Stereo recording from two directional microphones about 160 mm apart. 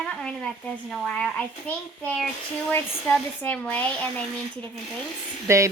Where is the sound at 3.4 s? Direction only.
10° left (ahead or behind).